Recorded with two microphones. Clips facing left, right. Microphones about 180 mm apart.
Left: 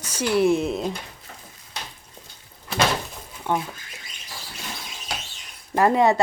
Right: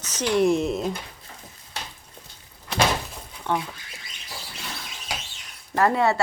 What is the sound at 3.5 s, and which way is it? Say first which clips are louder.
Speech: left 1 dB; 10° left (ahead or behind).